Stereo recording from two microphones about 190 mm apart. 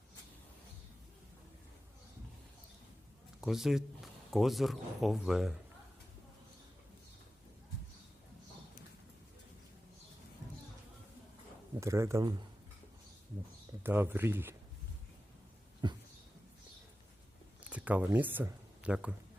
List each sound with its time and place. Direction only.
3.4 s speech: centre (ahead or behind)
11.8 s speech: 15° right (ahead or behind)
13.8 s speech: 10° right (ahead or behind)
15.8 s a sound: 25° right (ahead or behind)
17.6 s speech: 5° right (ahead or behind)